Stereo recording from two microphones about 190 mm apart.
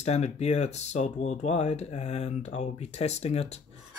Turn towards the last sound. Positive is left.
turn(degrees=35)  # may be behind; listen again after turning